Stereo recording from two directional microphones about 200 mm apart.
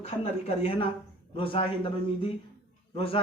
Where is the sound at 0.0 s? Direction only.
30° left (ahead or behind).